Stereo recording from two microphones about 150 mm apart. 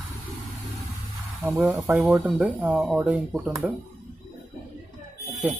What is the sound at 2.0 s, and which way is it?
A woman's voice, centre (ahead or behind).